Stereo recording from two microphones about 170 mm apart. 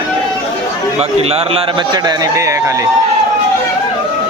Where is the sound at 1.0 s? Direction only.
35° right (ahead or behind); by 2.8 s 20° right (ahead or behind).